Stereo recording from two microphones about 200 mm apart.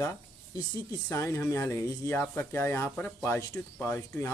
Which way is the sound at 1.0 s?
15° left (ahead or behind).